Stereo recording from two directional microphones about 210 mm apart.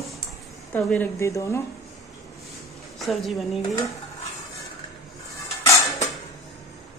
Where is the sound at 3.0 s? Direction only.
Centre (ahead or behind).